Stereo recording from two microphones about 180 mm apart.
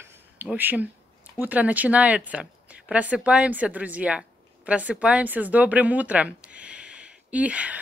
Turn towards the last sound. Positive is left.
turn(degrees=-5)  # may be behind; listen again after turning